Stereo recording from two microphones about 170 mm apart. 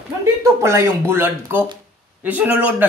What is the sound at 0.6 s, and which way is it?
Speech, 15° right (ahead or behind).